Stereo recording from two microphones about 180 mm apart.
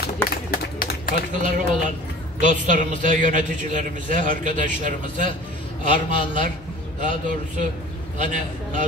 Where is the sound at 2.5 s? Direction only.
45° right (ahead or behind).